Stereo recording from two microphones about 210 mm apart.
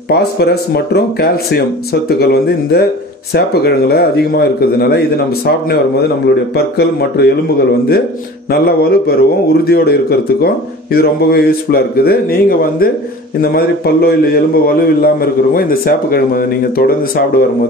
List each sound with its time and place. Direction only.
0.1 s a man's voice: 50° left (ahead or behind)
6.5 s a man's voice: 50° left (ahead or behind)
8.5 s a man's voice: 50° left (ahead or behind)